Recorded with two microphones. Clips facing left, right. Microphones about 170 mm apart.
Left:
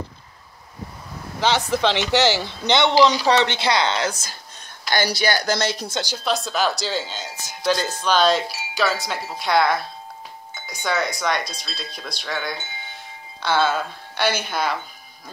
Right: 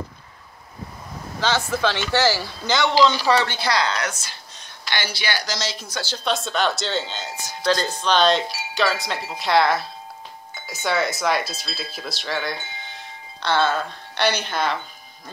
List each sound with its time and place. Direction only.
1.4 s speech: 15° left (ahead or behind)
4.8 s speech: 40° left (ahead or behind)
5.9 s speech: 20° left (ahead or behind)
6.1 s speech: centre (ahead or behind)